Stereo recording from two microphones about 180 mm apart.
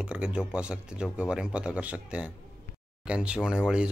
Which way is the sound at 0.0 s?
5° right (ahead or behind).